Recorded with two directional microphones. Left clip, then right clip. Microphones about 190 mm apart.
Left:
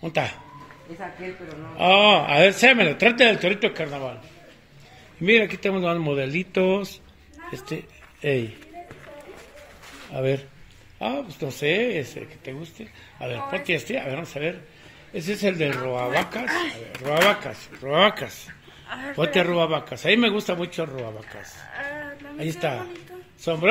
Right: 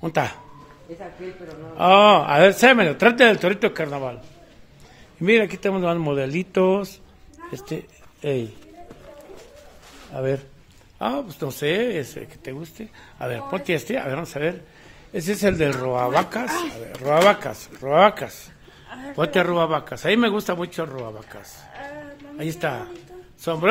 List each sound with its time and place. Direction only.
0.0 s speech: 20° right (ahead or behind)
1.5 s speech: 10° right (ahead or behind)
5.2 s speech: 10° right (ahead or behind)
8.2 s speech: centre (ahead or behind)
10.1 s speech: centre (ahead or behind)
11.0 s speech: 15° right (ahead or behind)
13.2 s speech: 25° right (ahead or behind)
16.5 s speech: 55° right (ahead or behind)
16.9 s speech: 20° right (ahead or behind)
17.8 s a woman's voice: 5° right (ahead or behind)